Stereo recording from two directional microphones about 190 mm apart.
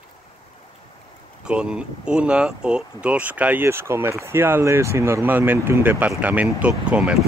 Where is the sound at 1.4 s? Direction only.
5° right (ahead or behind).